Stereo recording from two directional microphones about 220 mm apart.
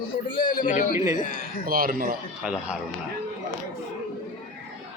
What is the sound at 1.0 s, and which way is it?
Speech, 15° right (ahead or behind).